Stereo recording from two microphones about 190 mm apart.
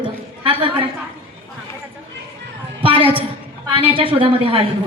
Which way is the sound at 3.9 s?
25° right (ahead or behind).